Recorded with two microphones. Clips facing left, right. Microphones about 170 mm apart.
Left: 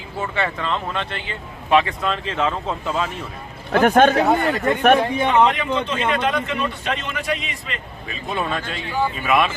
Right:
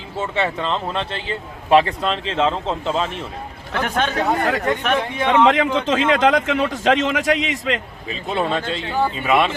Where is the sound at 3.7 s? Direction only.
45° left (ahead or behind).